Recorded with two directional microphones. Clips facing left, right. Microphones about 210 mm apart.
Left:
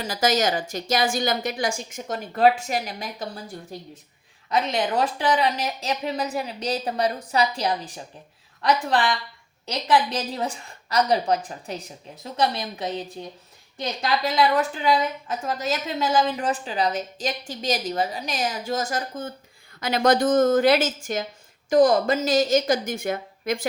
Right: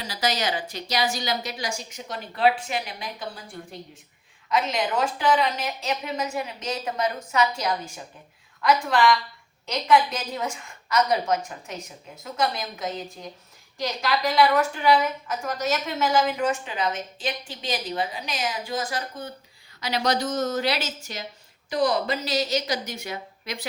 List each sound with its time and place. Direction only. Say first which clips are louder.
0.0 s a woman's voice: left 5 dB; 45° left (ahead or behind)
4.4 s speech: left 1 dB; 35° left (ahead or behind)
15.3 s a woman's voice: even; 30° left (ahead or behind); by 23.6 s 50° left (ahead or behind)